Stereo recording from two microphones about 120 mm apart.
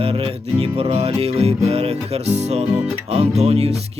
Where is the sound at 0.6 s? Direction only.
55° right (ahead or behind).